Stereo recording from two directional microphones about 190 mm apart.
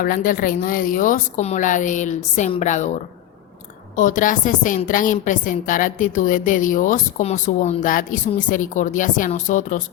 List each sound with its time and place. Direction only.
0.0 s a woman's voice: 45° left (ahead or behind)
3.9 s a woman's voice: 45° left (ahead or behind)